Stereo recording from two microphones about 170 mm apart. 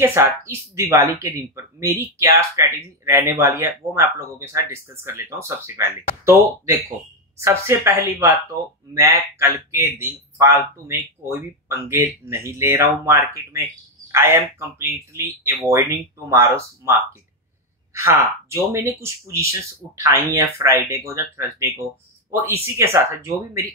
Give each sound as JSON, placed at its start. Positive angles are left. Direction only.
{"t": 0.0, "sound": "speech", "side_deg": -15}
{"t": 9.4, "sound": "speech", "side_deg": -15}
{"t": 17.9, "sound": "speech", "side_deg": -15}